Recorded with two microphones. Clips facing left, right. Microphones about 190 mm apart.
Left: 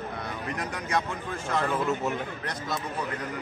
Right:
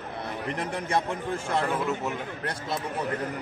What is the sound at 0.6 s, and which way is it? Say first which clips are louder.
Speech: right 2 dB; 30° right (ahead or behind).